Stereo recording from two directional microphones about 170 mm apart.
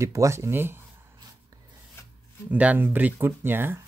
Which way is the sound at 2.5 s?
10° right (ahead or behind).